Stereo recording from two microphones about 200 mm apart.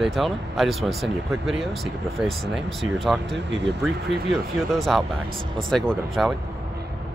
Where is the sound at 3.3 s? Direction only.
60° right (ahead or behind).